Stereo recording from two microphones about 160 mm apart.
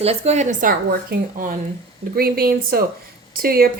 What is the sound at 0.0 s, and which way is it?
A woman's voice, 40° right (ahead or behind).